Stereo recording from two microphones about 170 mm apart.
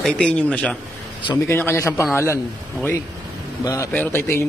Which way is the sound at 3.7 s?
15° left (ahead or behind).